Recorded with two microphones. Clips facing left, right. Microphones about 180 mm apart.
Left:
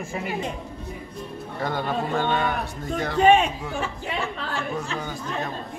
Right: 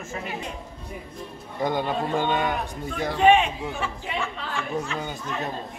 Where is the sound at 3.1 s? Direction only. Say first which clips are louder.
Left 1 dB; 40° left (ahead or behind).